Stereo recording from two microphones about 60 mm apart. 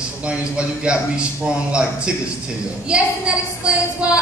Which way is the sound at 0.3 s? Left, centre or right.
Centre.